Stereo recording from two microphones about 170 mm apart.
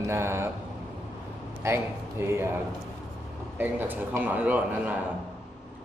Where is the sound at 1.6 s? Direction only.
15° right (ahead or behind).